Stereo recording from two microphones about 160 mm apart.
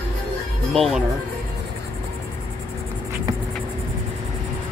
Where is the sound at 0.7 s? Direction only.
Centre (ahead or behind).